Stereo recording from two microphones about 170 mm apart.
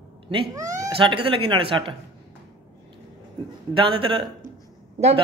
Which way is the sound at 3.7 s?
30° right (ahead or behind).